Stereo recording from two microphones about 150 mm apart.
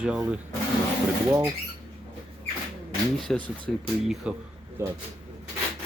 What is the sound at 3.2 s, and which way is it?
Speech, 5° left (ahead or behind).